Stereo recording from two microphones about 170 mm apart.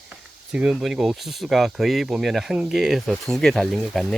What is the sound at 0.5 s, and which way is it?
Speech, 5° right (ahead or behind).